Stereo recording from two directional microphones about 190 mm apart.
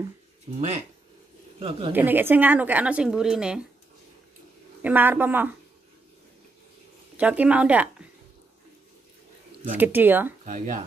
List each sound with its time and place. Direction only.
0.6 s speech: 35° right (ahead or behind)
1.9 s a woman's voice: 10° right (ahead or behind)
4.8 s a woman's voice: 10° right (ahead or behind)
7.2 s a woman's voice: 5° right (ahead or behind)
9.8 s a woman's voice: 10° right (ahead or behind)
10.4 s speech: 40° right (ahead or behind)